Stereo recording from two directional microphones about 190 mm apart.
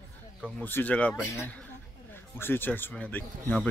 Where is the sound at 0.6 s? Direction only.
10° left (ahead or behind).